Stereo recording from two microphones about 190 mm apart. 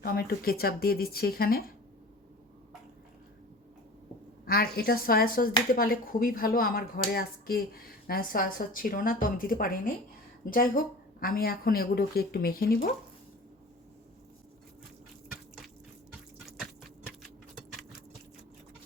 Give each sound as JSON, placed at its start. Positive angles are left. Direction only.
{"t": 0.0, "sound": "speech", "side_deg": 55}
{"t": 4.4, "sound": "speech", "side_deg": 50}